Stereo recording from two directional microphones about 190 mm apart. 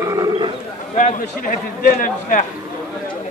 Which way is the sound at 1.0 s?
40° left (ahead or behind).